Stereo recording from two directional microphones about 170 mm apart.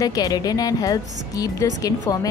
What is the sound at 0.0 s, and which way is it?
A woman's voice, 20° left (ahead or behind).